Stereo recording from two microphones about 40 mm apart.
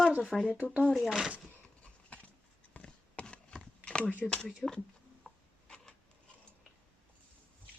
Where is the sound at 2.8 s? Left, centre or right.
Left.